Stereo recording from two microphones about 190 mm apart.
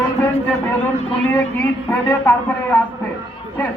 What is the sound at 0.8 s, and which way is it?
A woman's voice, 10° left (ahead or behind).